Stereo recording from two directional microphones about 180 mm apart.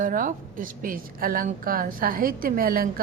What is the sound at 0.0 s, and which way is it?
A woman's voice, 50° right (ahead or behind).